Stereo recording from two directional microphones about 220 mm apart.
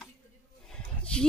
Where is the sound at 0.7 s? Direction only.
5° left (ahead or behind).